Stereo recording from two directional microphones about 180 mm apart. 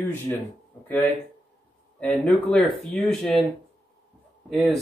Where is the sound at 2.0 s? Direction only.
5° left (ahead or behind).